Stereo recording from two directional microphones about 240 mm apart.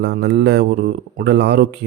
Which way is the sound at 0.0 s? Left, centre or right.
Right.